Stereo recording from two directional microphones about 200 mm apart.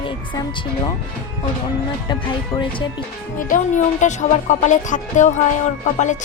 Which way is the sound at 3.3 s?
40° left (ahead or behind).